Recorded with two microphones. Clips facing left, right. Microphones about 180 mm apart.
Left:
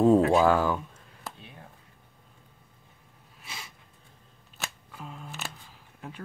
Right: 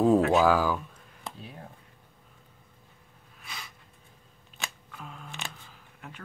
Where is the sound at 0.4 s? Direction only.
5° right (ahead or behind).